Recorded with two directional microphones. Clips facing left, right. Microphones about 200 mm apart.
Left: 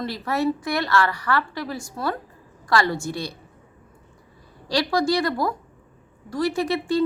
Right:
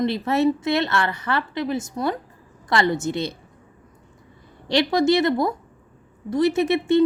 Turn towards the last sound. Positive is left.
turn(degrees=-25)  # may be behind; listen again after turning